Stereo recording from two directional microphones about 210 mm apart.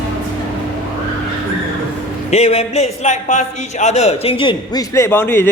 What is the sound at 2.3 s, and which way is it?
A man's voice, 30° left (ahead or behind).